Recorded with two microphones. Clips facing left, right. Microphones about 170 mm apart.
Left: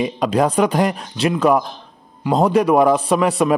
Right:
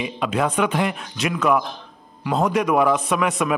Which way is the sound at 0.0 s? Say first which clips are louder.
Left 5 dB; 40° left (ahead or behind).